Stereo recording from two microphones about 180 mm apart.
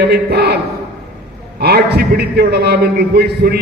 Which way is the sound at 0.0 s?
65° right (ahead or behind).